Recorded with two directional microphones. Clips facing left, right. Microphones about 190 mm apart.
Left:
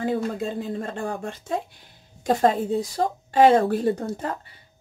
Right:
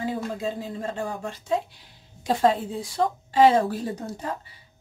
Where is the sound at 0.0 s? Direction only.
55° left (ahead or behind).